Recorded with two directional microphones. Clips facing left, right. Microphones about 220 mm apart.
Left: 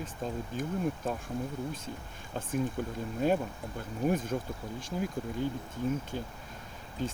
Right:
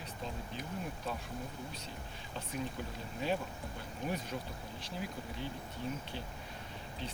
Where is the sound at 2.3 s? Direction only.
50° left (ahead or behind).